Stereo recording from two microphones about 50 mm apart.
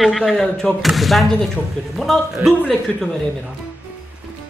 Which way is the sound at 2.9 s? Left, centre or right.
Centre.